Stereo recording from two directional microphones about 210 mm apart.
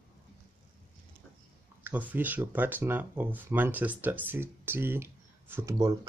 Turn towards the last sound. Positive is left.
turn(degrees=-15)  # may be behind; listen again after turning